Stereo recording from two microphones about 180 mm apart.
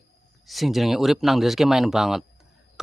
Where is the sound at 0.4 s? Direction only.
Centre (ahead or behind).